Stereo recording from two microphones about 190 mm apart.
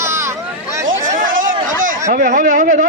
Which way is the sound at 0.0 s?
15° right (ahead or behind).